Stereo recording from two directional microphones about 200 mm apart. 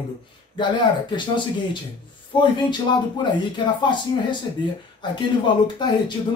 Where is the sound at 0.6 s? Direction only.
25° left (ahead or behind).